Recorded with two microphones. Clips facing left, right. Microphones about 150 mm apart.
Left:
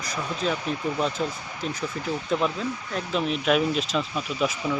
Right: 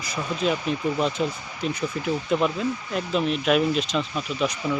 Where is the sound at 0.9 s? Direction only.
10° right (ahead or behind).